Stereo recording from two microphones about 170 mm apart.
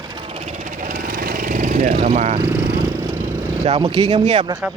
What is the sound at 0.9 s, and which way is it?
Vehicle, 55° right (ahead or behind).